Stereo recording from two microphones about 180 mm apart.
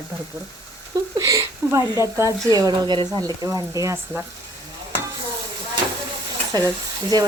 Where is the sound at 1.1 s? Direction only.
20° right (ahead or behind).